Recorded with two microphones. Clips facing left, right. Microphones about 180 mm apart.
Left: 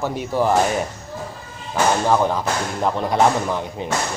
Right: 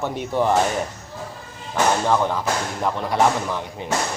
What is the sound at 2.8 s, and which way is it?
Speech, 25° left (ahead or behind).